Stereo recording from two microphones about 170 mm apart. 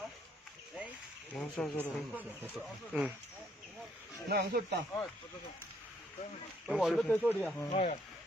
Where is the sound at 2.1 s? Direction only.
10° right (ahead or behind).